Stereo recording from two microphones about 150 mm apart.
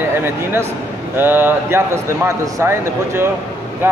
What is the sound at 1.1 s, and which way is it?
Speech, 15° right (ahead or behind).